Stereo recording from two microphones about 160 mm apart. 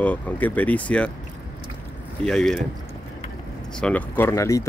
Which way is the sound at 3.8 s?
10° left (ahead or behind).